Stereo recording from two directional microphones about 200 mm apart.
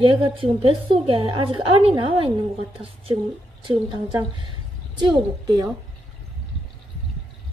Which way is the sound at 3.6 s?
25° right (ahead or behind).